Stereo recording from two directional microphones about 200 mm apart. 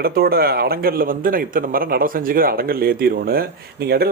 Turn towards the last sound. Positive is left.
turn(degrees=-50)  # may be behind; listen again after turning